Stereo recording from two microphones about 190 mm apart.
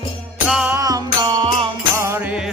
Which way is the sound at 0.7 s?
20° right (ahead or behind).